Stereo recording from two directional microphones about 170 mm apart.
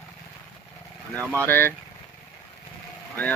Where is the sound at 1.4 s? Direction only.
10° left (ahead or behind).